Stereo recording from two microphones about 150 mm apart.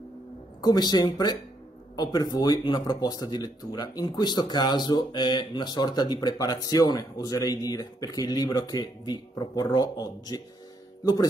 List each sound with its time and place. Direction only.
0.6 s speech: 25° left (ahead or behind)
2.3 s speech: 25° left (ahead or behind)